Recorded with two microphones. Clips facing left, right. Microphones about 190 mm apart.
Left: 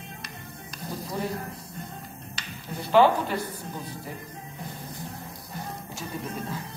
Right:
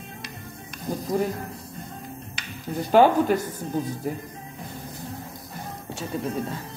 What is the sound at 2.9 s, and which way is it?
Speech, 45° right (ahead or behind).